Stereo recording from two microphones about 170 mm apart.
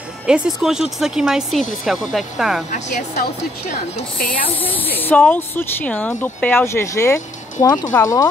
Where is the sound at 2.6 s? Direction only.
45° left (ahead or behind).